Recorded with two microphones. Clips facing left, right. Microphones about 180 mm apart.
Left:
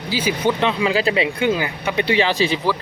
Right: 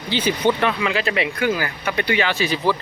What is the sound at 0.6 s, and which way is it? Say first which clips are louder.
Speech: left 2 dB; 20° left (ahead or behind).